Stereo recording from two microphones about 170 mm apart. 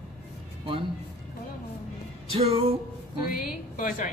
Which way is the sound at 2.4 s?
35° right (ahead or behind).